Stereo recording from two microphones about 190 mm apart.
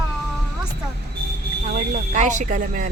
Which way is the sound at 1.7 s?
40° right (ahead or behind).